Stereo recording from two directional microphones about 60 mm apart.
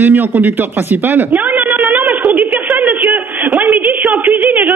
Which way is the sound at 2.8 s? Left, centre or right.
Right.